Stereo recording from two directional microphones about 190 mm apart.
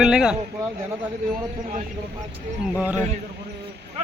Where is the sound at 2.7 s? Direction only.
10° right (ahead or behind).